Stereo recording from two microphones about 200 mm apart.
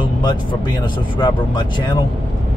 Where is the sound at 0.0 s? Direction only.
20° left (ahead or behind).